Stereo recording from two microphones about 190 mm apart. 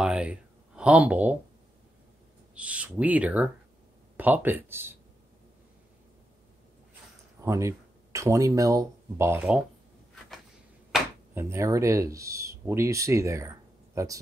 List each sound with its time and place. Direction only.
0.0 s speech: 5° right (ahead or behind)
2.5 s speech: 5° right (ahead or behind)
7.4 s speech: 15° right (ahead or behind)
11.3 s speech: 15° right (ahead or behind)